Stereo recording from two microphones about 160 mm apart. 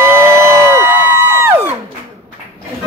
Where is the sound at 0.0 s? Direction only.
15° right (ahead or behind).